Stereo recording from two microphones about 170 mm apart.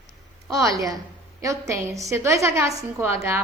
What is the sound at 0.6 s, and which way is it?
A woman's voice, 20° right (ahead or behind).